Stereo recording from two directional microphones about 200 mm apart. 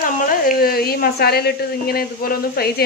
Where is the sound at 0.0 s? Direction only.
45° left (ahead or behind).